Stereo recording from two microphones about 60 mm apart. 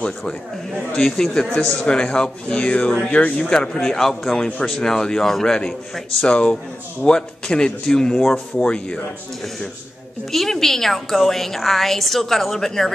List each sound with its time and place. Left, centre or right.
0.9 s a man's voice: centre
10.3 s a woman's voice: centre